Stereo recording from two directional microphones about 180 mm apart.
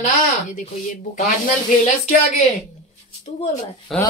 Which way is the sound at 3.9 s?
Centre (ahead or behind).